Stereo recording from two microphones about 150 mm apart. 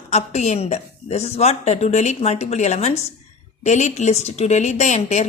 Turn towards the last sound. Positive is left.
turn(degrees=50)  # may be behind; listen again after turning